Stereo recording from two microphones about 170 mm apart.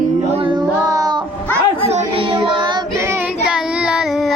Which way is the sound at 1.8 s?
35° right (ahead or behind).